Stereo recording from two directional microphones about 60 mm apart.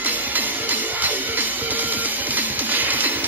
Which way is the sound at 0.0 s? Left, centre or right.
Right.